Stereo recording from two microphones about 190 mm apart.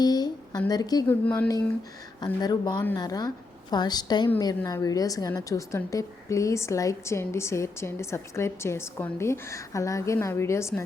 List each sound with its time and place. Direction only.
0.0 s a woman's voice: 20° left (ahead or behind)
1.2 s a woman's voice: 10° left (ahead or behind)